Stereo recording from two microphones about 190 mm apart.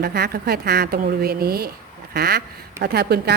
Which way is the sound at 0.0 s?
55° right (ahead or behind).